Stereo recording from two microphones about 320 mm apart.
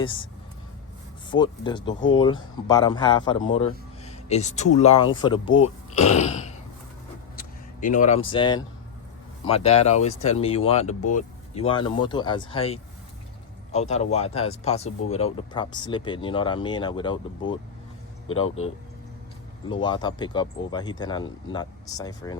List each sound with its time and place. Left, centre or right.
0.0 s speech: centre
1.3 s speech: centre
18.3 s speech: left
19.6 s speech: centre